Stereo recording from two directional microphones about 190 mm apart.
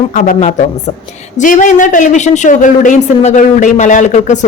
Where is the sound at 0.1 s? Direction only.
40° left (ahead or behind).